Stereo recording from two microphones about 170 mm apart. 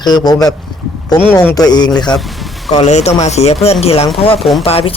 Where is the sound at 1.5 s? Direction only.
25° left (ahead or behind).